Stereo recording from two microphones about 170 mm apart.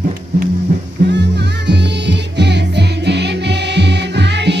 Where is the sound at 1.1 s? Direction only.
90° right.